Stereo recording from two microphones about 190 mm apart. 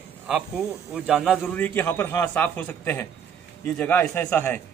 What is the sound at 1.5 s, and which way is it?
A man's voice, 10° left (ahead or behind).